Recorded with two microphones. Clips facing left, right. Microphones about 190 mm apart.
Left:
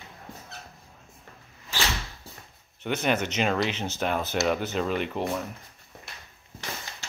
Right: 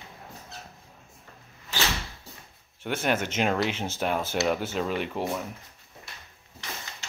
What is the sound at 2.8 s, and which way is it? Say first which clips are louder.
Speech: left 1 dB; 5° right (ahead or behind).